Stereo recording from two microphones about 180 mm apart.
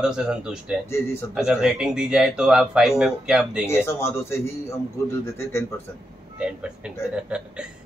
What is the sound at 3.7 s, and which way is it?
Speech, 15° left (ahead or behind).